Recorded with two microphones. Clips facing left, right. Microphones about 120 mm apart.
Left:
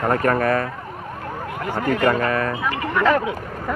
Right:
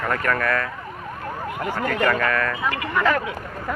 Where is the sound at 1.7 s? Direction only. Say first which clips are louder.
Left 3 dB; 25° left (ahead or behind).